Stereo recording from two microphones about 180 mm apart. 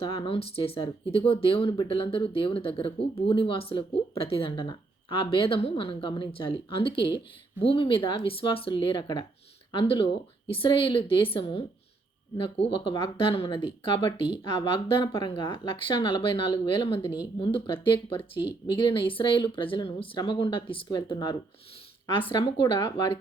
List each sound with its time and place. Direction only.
0.0 s speech: 25° left (ahead or behind)